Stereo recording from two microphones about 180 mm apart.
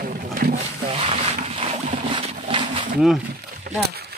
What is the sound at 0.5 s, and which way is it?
Wild animals, 35° right (ahead or behind).